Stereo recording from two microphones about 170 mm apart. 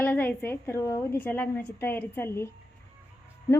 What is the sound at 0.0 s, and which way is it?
A woman's voice, 10° left (ahead or behind).